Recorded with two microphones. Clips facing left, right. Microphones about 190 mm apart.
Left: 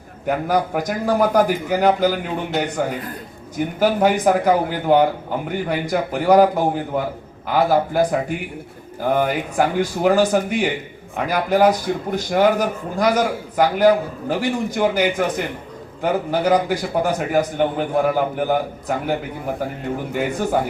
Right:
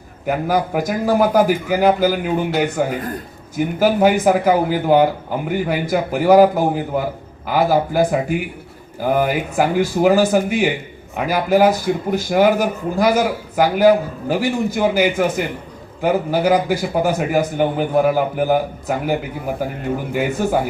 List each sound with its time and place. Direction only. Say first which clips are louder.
0.3 s a man's voice: right 1 dB; 5° right (ahead or behind)